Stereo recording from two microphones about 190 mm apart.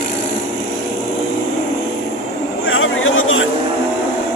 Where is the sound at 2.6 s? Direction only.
90° left.